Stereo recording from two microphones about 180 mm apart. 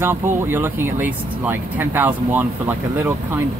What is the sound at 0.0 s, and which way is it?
Speech, 10° right (ahead or behind).